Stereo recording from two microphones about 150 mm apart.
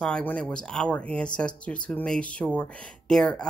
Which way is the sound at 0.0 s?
10° left (ahead or behind).